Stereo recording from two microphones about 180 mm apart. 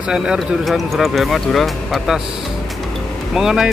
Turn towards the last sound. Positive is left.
turn(degrees=-5)  # may be behind; listen again after turning